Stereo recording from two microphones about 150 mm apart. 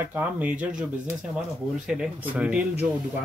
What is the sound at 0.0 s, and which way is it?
Speech, 10° right (ahead or behind).